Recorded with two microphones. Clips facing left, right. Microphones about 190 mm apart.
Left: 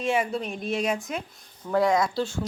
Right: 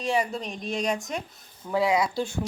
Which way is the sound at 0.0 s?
Centre (ahead or behind).